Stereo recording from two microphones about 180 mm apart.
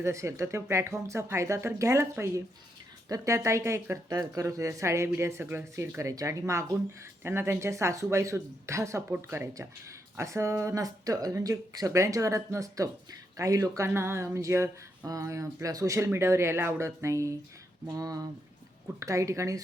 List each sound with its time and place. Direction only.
0.0 s speech: 15° right (ahead or behind)